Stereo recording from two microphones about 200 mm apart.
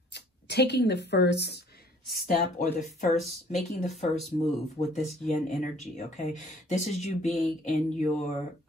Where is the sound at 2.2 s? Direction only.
35° left (ahead or behind).